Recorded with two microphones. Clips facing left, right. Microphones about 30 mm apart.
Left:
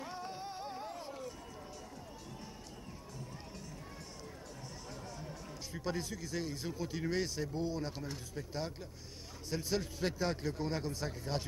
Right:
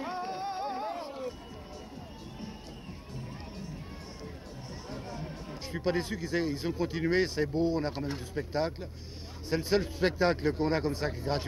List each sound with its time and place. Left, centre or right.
0.0 s music: right
4.9 s a man's voice: right